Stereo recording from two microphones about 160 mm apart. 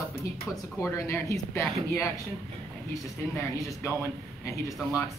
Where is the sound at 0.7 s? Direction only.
15° left (ahead or behind).